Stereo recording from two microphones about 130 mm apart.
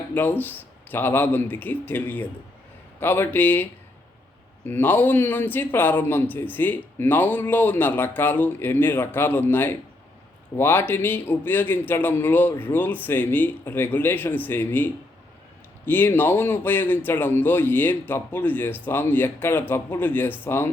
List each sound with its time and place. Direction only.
0.1 s speech: 15° left (ahead or behind)
15.9 s speech: 15° left (ahead or behind)